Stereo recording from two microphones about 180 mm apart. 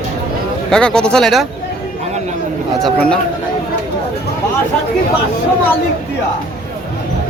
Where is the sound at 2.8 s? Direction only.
5° left (ahead or behind).